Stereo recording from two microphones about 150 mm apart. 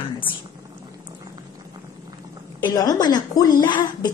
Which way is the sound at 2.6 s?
25° left (ahead or behind).